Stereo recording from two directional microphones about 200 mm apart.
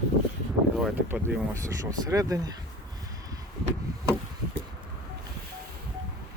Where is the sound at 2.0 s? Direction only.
15° right (ahead or behind).